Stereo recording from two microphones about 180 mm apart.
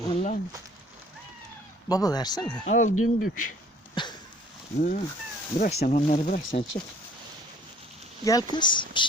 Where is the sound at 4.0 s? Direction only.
25° left (ahead or behind).